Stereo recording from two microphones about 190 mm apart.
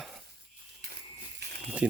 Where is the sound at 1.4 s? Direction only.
60° right (ahead or behind).